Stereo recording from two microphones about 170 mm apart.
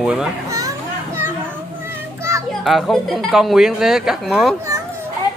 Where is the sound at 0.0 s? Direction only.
5° right (ahead or behind).